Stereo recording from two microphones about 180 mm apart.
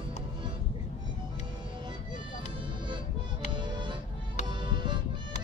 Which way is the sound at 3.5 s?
25° right (ahead or behind).